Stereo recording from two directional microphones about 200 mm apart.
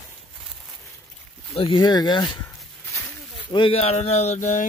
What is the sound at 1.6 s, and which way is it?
Speech, 25° left (ahead or behind).